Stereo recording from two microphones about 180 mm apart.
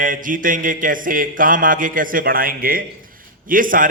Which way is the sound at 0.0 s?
50° right (ahead or behind).